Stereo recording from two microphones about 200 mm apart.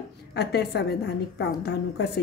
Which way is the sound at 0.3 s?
55° left (ahead or behind).